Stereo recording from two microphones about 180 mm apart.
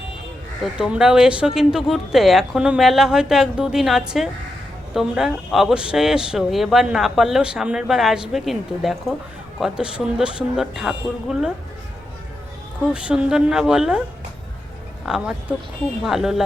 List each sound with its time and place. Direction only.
0.6 s speech: 5° right (ahead or behind)
12.9 s speech: 5° right (ahead or behind)
15.0 s speech: 5° right (ahead or behind)